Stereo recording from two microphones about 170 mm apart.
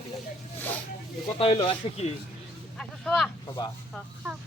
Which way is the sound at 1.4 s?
30° left (ahead or behind).